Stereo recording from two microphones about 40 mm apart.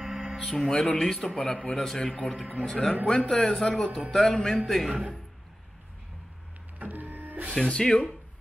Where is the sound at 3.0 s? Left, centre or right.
Left.